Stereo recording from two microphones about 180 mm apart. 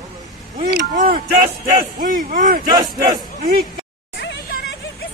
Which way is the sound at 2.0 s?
45° right (ahead or behind).